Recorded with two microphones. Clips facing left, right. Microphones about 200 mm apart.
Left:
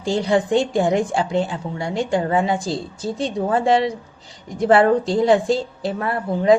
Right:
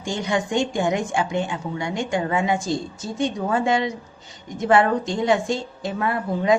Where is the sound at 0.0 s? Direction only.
35° left (ahead or behind).